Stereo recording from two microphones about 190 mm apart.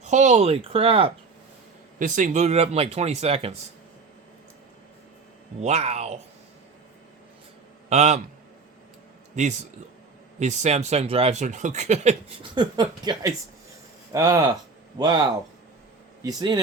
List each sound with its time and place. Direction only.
0.0 s speech: 40° right (ahead or behind)
2.0 s speech: 40° right (ahead or behind)
5.5 s speech: 35° right (ahead or behind)
7.9 s speech: 35° right (ahead or behind)
9.3 s speech: 40° right (ahead or behind)
12.5 s speech: 20° right (ahead or behind)